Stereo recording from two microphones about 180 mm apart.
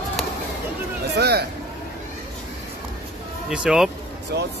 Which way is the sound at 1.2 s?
65° right (ahead or behind).